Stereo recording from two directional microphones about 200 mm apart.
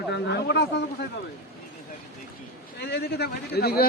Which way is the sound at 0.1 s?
60° left (ahead or behind).